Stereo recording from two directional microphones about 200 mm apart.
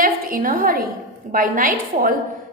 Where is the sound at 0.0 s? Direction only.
45° right (ahead or behind).